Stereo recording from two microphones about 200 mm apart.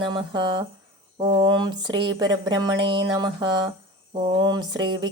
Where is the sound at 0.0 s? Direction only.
25° right (ahead or behind).